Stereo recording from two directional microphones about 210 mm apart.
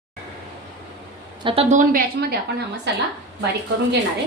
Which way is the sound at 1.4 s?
25° right (ahead or behind).